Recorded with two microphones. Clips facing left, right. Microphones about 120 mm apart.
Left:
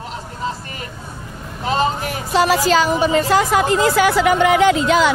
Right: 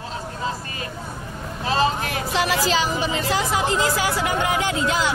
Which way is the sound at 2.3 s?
40° left (ahead or behind).